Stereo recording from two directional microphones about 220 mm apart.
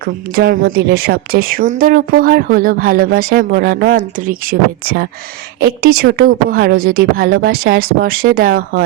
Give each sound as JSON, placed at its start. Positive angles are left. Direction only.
{"t": 0.0, "sound": "a woman's voice", "side_deg": -40}